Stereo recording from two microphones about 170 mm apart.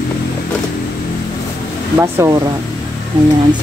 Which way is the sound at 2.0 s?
15° right (ahead or behind).